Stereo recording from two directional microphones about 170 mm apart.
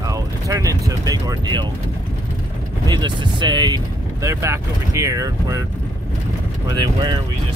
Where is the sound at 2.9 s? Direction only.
25° right (ahead or behind).